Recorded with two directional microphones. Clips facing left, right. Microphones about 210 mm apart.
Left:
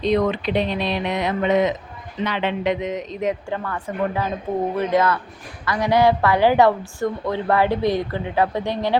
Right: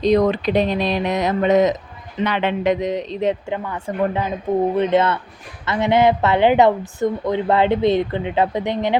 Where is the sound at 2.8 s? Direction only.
30° right (ahead or behind).